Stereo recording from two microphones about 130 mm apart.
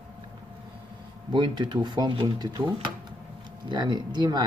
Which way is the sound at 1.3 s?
35° right (ahead or behind).